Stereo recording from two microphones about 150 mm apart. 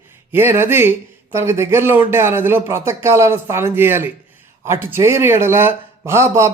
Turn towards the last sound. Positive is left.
turn(degrees=-20)  # may be behind; listen again after turning